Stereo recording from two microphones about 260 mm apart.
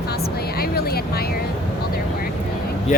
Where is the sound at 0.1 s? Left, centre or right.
Left.